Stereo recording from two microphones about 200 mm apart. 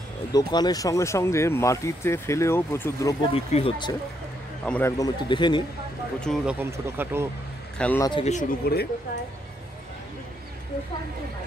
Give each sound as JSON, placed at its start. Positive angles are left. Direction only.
{"t": 0.3, "sound": "speech", "side_deg": 20}
{"t": 3.3, "sound": "speech", "side_deg": 30}
{"t": 4.6, "sound": "speech", "side_deg": 10}
{"t": 6.3, "sound": "speech", "side_deg": 5}
{"t": 6.6, "sound": "speech", "side_deg": -10}
{"t": 7.7, "sound": "speech", "side_deg": 5}
{"t": 8.0, "sound": "speech", "side_deg": 25}
{"t": 8.3, "sound": "speech", "side_deg": 40}